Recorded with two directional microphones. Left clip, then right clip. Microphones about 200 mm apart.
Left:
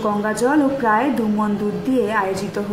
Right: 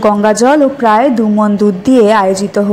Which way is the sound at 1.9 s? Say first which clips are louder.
Right 11 dB; 40° right (ahead or behind).